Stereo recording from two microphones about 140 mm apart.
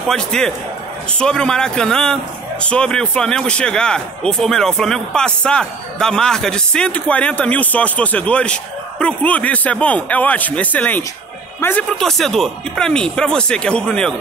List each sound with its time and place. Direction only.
0.1 s speech: 5° left (ahead or behind)
12.0 s speech: 5° left (ahead or behind)